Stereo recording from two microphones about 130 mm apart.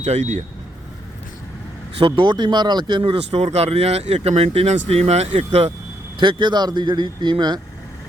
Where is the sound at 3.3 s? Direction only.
55° right (ahead or behind).